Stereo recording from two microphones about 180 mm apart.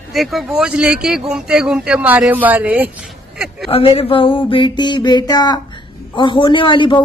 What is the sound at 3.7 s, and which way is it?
A woman's voice, 30° left (ahead or behind).